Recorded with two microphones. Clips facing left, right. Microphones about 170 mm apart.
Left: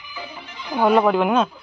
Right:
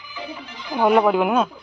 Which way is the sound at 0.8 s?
10° right (ahead or behind).